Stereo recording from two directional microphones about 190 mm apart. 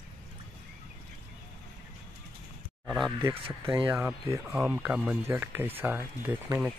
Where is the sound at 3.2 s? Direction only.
25° right (ahead or behind).